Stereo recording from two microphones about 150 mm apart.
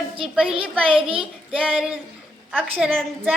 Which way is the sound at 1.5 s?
5° right (ahead or behind).